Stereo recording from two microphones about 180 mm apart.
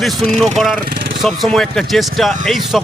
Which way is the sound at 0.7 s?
55° right (ahead or behind).